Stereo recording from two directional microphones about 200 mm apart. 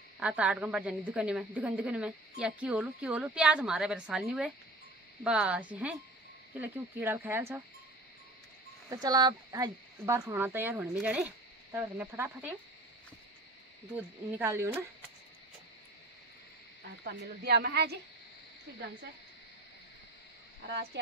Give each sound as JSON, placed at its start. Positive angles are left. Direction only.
{"t": 0.2, "sound": "speech", "side_deg": -5}
{"t": 8.9, "sound": "speech", "side_deg": -20}
{"t": 13.9, "sound": "speech", "side_deg": -15}
{"t": 17.0, "sound": "speech", "side_deg": -55}
{"t": 20.9, "sound": "speech", "side_deg": -60}